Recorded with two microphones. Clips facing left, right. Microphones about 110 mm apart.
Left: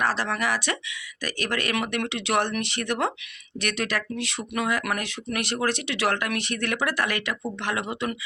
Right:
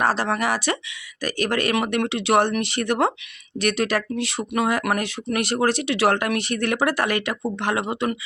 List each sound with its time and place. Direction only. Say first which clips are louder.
0.0 s speech: right 4 dB; 40° right (ahead or behind)